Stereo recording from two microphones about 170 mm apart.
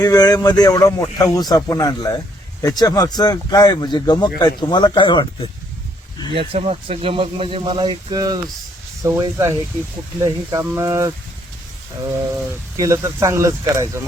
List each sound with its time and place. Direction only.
0.0 s speech: 20° left (ahead or behind)
6.3 s speech: 35° right (ahead or behind); by 11.1 s 20° right (ahead or behind)
12.5 s speech: 20° right (ahead or behind)